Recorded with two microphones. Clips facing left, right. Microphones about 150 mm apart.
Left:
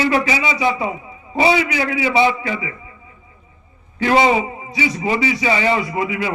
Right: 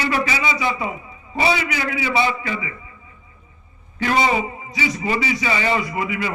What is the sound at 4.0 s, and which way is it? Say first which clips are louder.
Speech: left 5 dB; 25° left (ahead or behind).